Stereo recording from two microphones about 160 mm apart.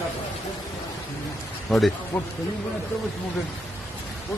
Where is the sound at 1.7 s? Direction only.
Centre (ahead or behind).